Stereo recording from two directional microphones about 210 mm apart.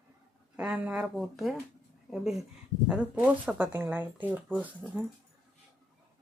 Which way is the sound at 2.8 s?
5° right (ahead or behind).